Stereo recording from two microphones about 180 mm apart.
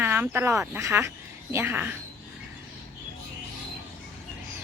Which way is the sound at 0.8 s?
15° right (ahead or behind).